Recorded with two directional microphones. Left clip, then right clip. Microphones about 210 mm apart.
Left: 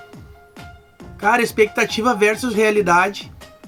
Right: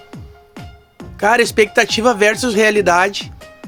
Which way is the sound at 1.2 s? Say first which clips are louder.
Right 3 dB; 45° right (ahead or behind).